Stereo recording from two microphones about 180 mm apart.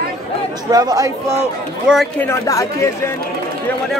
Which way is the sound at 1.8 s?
Centre (ahead or behind).